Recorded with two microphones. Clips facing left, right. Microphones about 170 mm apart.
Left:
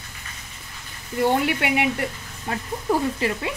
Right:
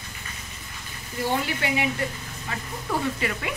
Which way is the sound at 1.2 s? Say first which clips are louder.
Left 5 dB; 65° left (ahead or behind).